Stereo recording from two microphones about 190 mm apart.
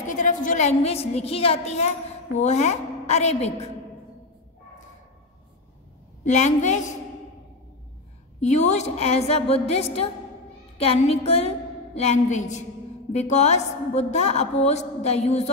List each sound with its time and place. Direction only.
0.0 s a sound: 40° left (ahead or behind)
0.5 s a woman's voice: 35° left (ahead or behind)
6.2 s a woman's voice: 35° left (ahead or behind)
8.4 s a woman's voice: 35° left (ahead or behind)